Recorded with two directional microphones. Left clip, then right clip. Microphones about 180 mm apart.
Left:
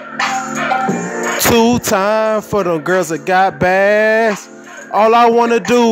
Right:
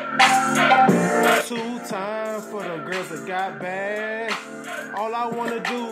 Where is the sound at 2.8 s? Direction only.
60° left (ahead or behind).